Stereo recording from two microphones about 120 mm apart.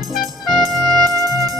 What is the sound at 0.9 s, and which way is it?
Music, 30° right (ahead or behind).